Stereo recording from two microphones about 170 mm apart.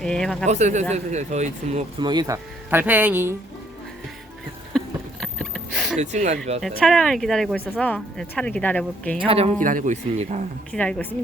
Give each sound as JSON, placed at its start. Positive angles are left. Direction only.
{"t": 0.0, "sound": "speech", "side_deg": 5}
{"t": 0.4, "sound": "speech", "side_deg": -45}
{"t": 2.0, "sound": "speech", "side_deg": -25}
{"t": 4.7, "sound": "a sound", "side_deg": 0}
{"t": 6.0, "sound": "speech", "side_deg": -45}
{"t": 6.6, "sound": "speech", "side_deg": 0}
{"t": 9.1, "sound": "speech", "side_deg": -35}
{"t": 9.6, "sound": "speech", "side_deg": -50}
{"t": 10.7, "sound": "speech", "side_deg": 5}